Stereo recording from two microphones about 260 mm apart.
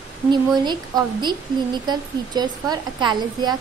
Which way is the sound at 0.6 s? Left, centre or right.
Centre.